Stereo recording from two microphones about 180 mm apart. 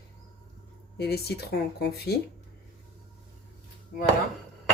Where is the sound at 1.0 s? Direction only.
60° left (ahead or behind).